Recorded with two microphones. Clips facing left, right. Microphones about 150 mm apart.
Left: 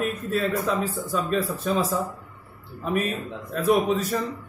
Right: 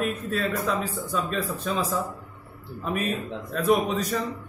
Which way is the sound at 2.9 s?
Centre (ahead or behind).